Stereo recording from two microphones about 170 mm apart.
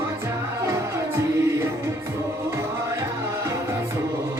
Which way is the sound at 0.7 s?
15° right (ahead or behind).